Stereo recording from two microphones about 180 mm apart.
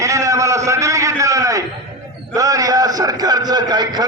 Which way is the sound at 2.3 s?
20° right (ahead or behind).